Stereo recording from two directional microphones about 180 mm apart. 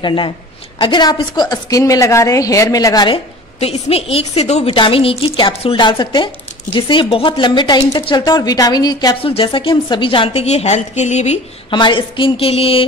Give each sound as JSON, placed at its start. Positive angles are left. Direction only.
{"t": 0.0, "sound": "a woman's voice", "side_deg": 25}
{"t": 3.5, "sound": "a woman's voice", "side_deg": 35}
{"t": 11.7, "sound": "a woman's voice", "side_deg": 25}